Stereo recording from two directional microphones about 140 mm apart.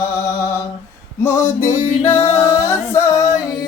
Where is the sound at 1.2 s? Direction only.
20° left (ahead or behind).